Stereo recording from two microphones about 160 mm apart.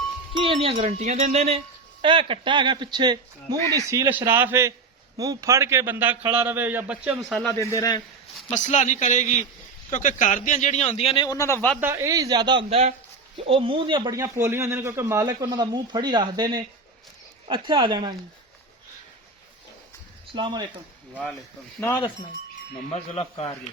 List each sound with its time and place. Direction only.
0.3 s a man's voice: 35° right (ahead or behind); by 7.1 s 10° right (ahead or behind)
7.3 s speech: 5° left (ahead or behind)
7.7 s a man's voice: 20° left (ahead or behind)
8.4 s speech: 45° left (ahead or behind); by 11.6 s 20° left (ahead or behind)
11.8 s speech: 15° right (ahead or behind)
14.2 s speech: 15° right (ahead or behind)
20.3 s speech: 30° right (ahead or behind)
21.8 s speech: 15° left (ahead or behind)
22.9 s speech: 40° left (ahead or behind)